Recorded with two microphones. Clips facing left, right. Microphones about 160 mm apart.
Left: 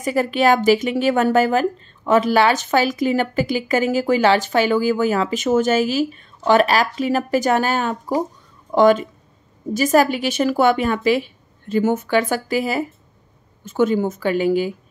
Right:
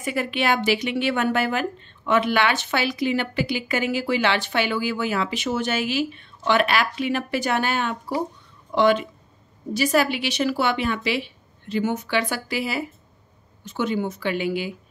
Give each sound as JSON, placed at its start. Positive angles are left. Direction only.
{"t": 0.0, "sound": "a woman's voice", "side_deg": 40}